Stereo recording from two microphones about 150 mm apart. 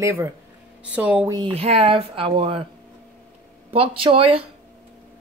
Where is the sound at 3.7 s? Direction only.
35° right (ahead or behind).